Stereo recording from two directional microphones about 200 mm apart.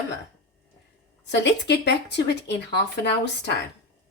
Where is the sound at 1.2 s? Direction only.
60° left (ahead or behind).